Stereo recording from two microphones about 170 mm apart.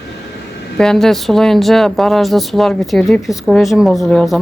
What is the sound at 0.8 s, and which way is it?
A woman's voice, 5° left (ahead or behind).